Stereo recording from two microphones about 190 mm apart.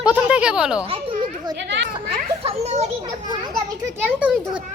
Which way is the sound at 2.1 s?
35° right (ahead or behind).